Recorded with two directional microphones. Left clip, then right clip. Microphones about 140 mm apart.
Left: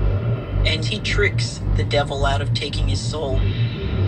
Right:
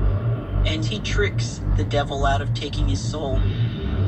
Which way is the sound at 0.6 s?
30° left (ahead or behind).